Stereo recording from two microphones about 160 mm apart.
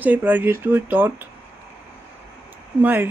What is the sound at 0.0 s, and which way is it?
Speech, 10° right (ahead or behind).